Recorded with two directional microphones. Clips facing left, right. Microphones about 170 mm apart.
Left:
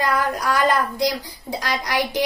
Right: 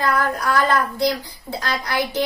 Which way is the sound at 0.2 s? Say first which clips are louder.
Even; 15° left (ahead or behind).